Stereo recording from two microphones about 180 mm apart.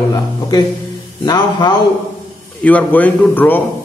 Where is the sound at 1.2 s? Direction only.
20° left (ahead or behind).